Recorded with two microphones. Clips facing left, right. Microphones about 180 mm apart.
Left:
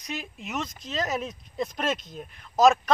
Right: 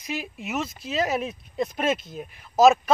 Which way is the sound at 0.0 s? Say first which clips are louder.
Right 4 dB; 5° right (ahead or behind).